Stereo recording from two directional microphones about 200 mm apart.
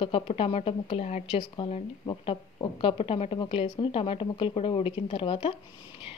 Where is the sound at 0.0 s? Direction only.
30° left (ahead or behind).